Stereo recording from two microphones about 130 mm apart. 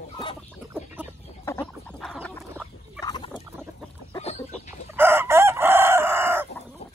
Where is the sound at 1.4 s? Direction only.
20° left (ahead or behind).